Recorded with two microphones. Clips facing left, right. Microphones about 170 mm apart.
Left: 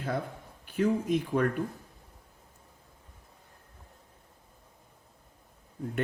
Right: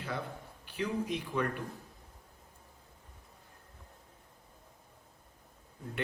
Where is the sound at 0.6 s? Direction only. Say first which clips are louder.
Left 7 dB; 50° left (ahead or behind).